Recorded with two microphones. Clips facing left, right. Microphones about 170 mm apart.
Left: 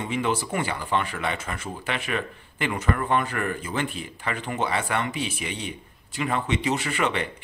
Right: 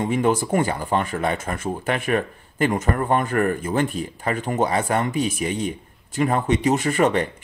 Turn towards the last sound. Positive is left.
turn(degrees=-45)  # may be behind; listen again after turning